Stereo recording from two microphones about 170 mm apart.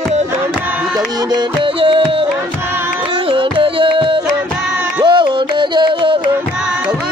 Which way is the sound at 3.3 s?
30° right (ahead or behind).